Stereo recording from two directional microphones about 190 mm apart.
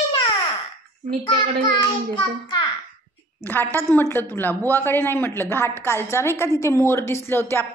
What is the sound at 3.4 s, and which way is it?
A woman's voice, 10° left (ahead or behind).